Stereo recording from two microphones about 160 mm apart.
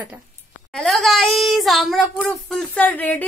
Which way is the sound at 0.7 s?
Centre (ahead or behind).